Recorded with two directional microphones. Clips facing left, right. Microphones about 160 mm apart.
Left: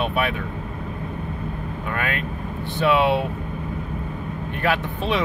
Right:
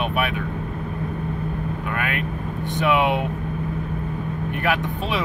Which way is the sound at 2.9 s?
15° right (ahead or behind).